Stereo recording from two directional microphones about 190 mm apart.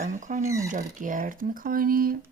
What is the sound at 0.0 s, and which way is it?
Speech, 40° right (ahead or behind).